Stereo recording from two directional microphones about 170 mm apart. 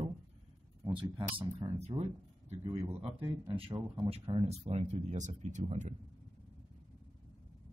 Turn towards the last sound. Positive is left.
turn(degrees=-40)  # may be behind; listen again after turning